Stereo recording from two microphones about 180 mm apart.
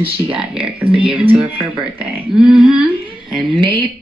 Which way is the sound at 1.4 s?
5° right (ahead or behind).